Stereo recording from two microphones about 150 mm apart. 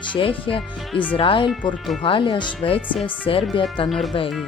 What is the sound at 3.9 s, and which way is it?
Speech, centre (ahead or behind).